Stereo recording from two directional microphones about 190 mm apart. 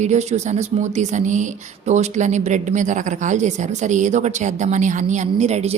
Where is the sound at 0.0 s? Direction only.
35° right (ahead or behind).